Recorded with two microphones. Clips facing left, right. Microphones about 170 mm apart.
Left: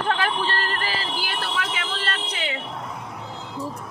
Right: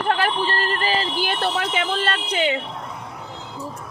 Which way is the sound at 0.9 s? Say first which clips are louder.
Right 6 dB; 25° right (ahead or behind).